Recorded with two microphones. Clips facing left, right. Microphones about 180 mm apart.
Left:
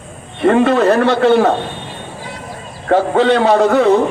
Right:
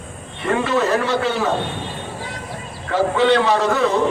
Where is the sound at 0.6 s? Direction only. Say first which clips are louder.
Left 5 dB; 60° left (ahead or behind).